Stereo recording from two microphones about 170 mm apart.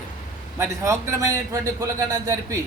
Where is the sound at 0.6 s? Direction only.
20° right (ahead or behind).